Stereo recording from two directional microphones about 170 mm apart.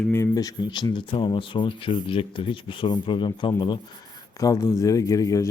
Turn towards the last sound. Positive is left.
turn(degrees=20)  # may be behind; listen again after turning